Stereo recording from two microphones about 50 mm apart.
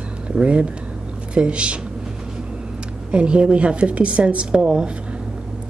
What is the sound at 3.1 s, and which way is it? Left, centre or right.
A woman's voice, right.